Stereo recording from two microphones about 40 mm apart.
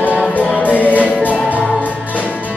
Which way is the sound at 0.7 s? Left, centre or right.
Right.